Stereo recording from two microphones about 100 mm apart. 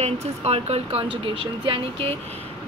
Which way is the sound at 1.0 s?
65° right (ahead or behind).